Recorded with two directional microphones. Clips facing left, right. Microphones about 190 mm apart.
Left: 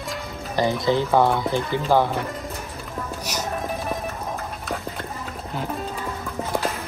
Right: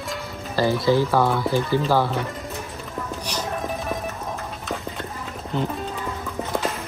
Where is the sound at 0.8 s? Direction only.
20° left (ahead or behind).